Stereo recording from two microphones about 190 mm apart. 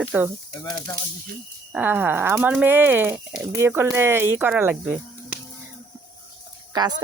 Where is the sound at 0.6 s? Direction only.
20° left (ahead or behind).